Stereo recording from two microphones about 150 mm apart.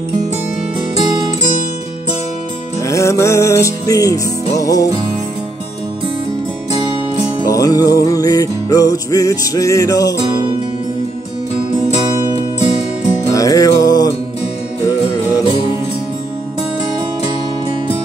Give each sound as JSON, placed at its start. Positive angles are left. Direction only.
{"t": 2.8, "sound": "music", "side_deg": 20}
{"t": 7.4, "sound": "music", "side_deg": 25}
{"t": 13.3, "sound": "music", "side_deg": 25}